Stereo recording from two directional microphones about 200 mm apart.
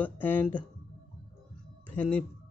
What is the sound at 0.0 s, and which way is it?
Speech, 10° left (ahead or behind).